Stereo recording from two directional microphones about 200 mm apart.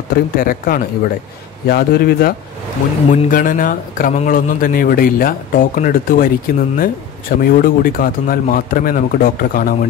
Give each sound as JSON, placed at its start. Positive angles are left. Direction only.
{"t": 0.1, "sound": "speech", "side_deg": 45}